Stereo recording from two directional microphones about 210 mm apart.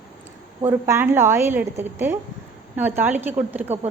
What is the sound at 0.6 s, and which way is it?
A woman's voice, 10° right (ahead or behind).